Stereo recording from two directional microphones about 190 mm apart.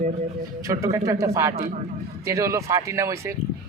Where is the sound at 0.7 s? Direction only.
15° right (ahead or behind).